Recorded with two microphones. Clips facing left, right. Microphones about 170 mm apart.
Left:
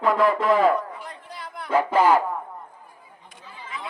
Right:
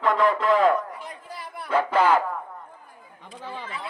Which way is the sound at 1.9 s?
10° left (ahead or behind).